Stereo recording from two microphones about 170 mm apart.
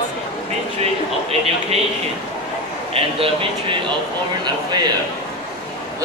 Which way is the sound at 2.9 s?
35° right (ahead or behind).